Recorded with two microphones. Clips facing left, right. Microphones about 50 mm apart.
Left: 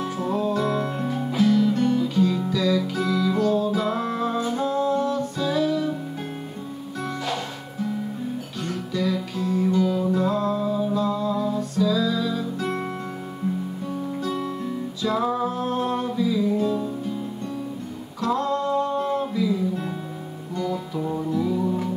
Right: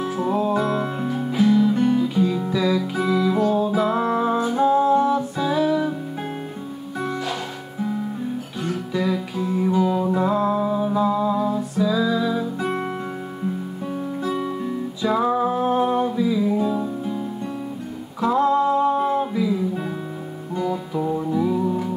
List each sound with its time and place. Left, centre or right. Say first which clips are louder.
0.0 s music: right 3 dB; centre
7.0 s music: right 4 dB; centre
8.9 s music: right 1 dB; centre
14.2 s music: right 5 dB; centre
18.2 s music: right 5 dB; centre